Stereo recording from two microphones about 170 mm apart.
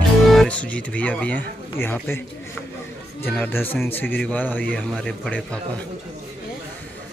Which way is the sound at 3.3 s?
10° left (ahead or behind).